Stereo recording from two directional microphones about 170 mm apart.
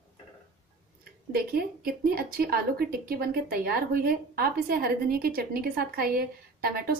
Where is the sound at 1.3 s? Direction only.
60° right (ahead or behind).